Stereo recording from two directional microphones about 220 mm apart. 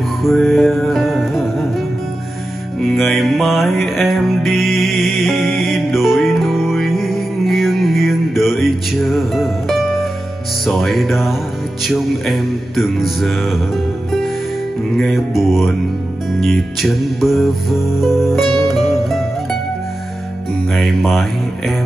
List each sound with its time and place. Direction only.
0.2 s music: centre (ahead or behind)
2.8 s music: centre (ahead or behind)
15.0 s music: centre (ahead or behind)
20.7 s speech: centre (ahead or behind)